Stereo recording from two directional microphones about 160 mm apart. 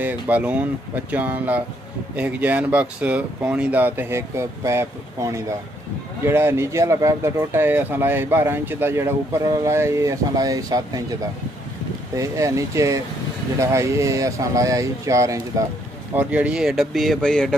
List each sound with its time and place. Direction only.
0.0 s a man's voice: 10° right (ahead or behind)
12.2 s speech: 20° right (ahead or behind)
16.2 s speech: 10° right (ahead or behind)